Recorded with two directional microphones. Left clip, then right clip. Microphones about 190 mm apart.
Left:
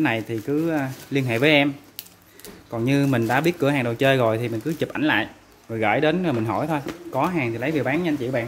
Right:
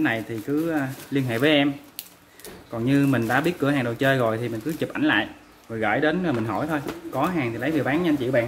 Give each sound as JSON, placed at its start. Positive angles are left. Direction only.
{"t": 0.0, "sound": "speech", "side_deg": 40}
{"t": 2.7, "sound": "speech", "side_deg": 35}